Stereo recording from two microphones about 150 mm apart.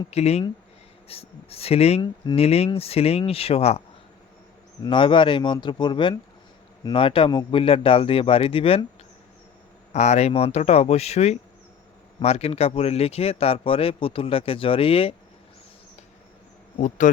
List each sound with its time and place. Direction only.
0.1 s speech: 45° left (ahead or behind)
9.9 s speech: 50° left (ahead or behind)
17.0 s speech: 60° left (ahead or behind)